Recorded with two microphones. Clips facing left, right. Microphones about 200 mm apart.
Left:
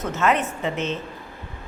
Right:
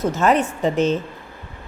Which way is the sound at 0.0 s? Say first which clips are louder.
Right 4 dB; 35° right (ahead or behind).